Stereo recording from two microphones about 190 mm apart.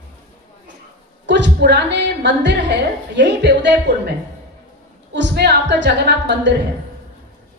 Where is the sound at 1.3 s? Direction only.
65° right (ahead or behind).